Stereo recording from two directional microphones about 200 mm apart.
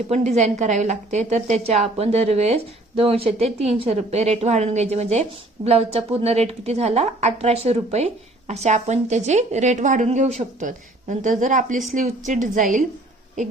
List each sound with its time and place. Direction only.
0.1 s a woman's voice: 35° right (ahead or behind)